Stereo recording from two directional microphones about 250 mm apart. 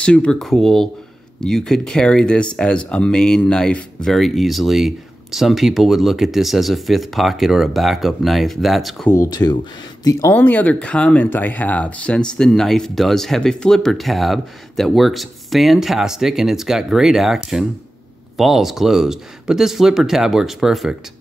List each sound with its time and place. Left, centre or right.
0.0 s speech: centre
9.1 s speech: centre